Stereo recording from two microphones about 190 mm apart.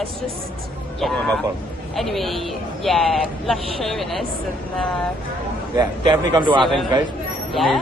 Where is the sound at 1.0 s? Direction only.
5° left (ahead or behind).